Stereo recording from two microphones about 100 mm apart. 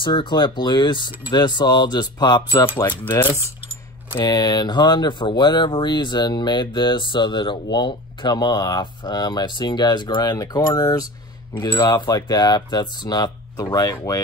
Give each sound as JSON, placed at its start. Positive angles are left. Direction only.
{"t": 0.0, "sound": "speech", "side_deg": 50}
{"t": 4.2, "sound": "speech", "side_deg": 45}